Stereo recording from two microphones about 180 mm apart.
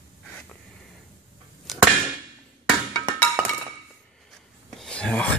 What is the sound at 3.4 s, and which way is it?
Chink, 15° right (ahead or behind).